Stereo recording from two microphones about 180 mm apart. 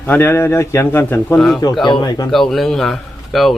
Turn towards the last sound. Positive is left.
turn(degrees=0)  # may be behind; listen again after turning